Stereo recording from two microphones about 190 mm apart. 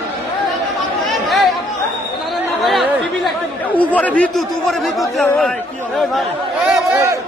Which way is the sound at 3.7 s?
5° left (ahead or behind).